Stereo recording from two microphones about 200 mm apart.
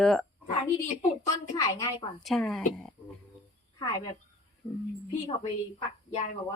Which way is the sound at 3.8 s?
20° left (ahead or behind).